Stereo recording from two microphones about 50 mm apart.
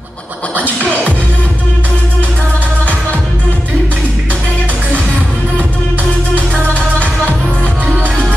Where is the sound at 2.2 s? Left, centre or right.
Right.